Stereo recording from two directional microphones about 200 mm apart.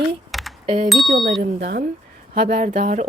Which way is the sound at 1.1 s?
50° right (ahead or behind).